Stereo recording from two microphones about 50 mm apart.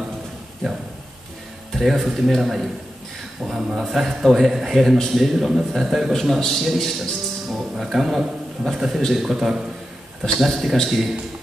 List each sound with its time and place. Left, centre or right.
1.7 s a man's voice: centre